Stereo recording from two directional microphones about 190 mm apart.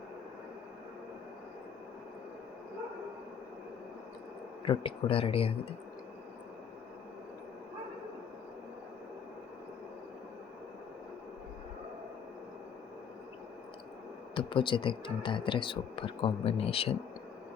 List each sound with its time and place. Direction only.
4.6 s speech: 25° left (ahead or behind)
14.3 s speech: 25° left (ahead or behind)